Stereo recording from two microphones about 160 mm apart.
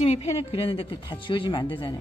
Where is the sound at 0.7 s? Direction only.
35° left (ahead or behind).